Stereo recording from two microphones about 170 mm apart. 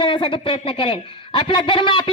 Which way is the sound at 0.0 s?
30° left (ahead or behind).